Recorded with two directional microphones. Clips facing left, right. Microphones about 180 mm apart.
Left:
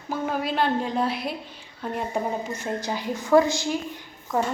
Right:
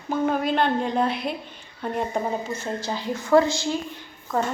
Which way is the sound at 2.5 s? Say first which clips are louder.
Even; 15° left (ahead or behind).